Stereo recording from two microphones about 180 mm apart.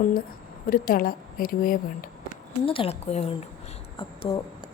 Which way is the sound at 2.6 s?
30° left (ahead or behind).